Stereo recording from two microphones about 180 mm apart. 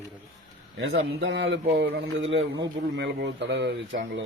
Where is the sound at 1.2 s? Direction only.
75° right (ahead or behind).